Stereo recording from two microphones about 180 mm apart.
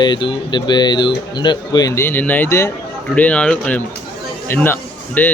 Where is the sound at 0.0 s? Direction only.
25° left (ahead or behind).